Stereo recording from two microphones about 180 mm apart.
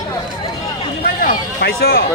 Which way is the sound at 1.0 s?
55° left (ahead or behind).